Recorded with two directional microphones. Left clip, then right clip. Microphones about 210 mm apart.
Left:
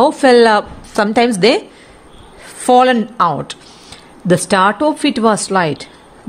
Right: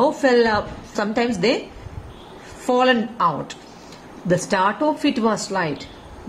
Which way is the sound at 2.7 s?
45° left (ahead or behind).